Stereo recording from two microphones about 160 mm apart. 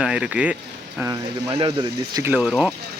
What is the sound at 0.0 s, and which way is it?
Speech, 5° right (ahead or behind).